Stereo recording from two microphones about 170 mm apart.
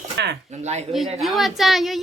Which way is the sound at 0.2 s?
90° right.